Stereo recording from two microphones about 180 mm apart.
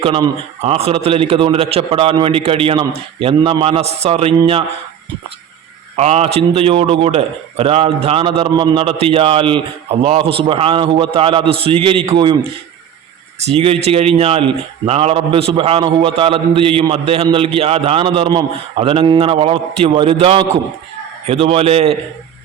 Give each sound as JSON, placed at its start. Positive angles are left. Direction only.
{"t": 0.0, "sound": "a man's voice", "side_deg": -30}
{"t": 6.0, "sound": "a man's voice", "side_deg": -35}
{"t": 13.4, "sound": "a man's voice", "side_deg": -35}